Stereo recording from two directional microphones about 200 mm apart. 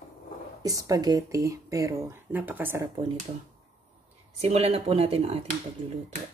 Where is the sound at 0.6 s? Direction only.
15° right (ahead or behind).